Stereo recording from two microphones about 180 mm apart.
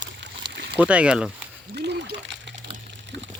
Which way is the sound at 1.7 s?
70° right (ahead or behind).